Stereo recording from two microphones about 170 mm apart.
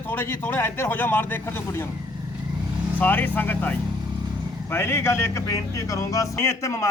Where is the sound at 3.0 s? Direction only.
10° left (ahead or behind).